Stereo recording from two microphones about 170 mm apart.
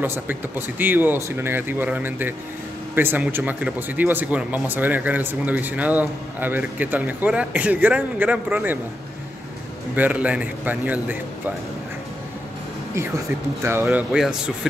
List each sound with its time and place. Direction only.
0.0 s speech: 10° right (ahead or behind)
9.9 s speech: 10° right (ahead or behind)
12.9 s speech: 15° right (ahead or behind)